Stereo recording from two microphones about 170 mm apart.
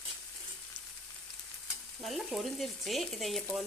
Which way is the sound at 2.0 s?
Centre (ahead or behind).